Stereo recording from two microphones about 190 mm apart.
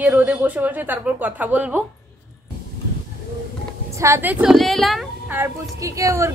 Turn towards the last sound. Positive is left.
turn(degrees=-15)  # may be behind; listen again after turning